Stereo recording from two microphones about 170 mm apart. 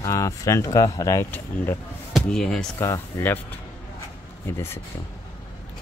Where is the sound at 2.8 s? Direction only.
15° left (ahead or behind).